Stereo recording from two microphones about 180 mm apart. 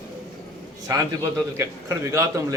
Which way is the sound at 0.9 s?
15° right (ahead or behind).